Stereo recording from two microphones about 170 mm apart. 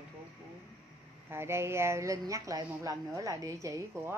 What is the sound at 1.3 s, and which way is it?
A woman's voice, 15° right (ahead or behind).